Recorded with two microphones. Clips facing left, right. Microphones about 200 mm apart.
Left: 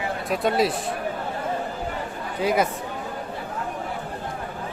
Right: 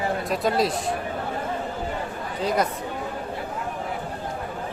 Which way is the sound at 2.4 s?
5° left (ahead or behind).